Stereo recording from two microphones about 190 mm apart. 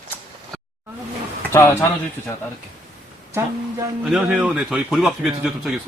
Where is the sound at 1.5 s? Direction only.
15° left (ahead or behind).